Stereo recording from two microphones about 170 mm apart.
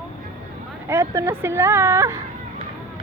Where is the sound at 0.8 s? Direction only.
15° right (ahead or behind).